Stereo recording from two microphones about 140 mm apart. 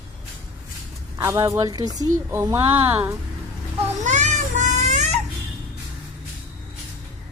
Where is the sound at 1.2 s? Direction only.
25° right (ahead or behind).